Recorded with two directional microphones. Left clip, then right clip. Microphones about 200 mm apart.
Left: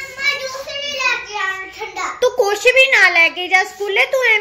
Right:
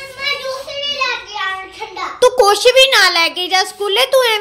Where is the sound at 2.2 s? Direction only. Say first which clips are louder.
Right 5 dB; 30° right (ahead or behind).